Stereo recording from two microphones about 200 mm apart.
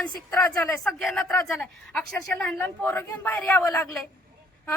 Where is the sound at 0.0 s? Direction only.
5° left (ahead or behind).